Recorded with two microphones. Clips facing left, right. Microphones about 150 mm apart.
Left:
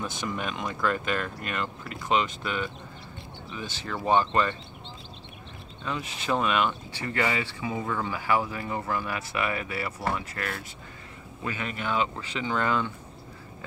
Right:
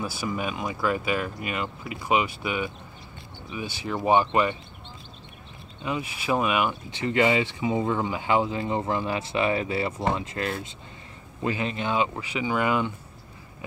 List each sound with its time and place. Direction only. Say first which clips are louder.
0.0 s speech: right 3 dB; 5° right (ahead or behind)
5.9 s speech: right 2 dB; 10° right (ahead or behind)
6.9 s speech: right 6 dB; 20° right (ahead or behind)